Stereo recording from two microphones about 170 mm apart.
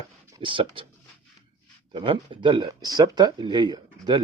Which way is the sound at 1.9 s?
30° right (ahead or behind).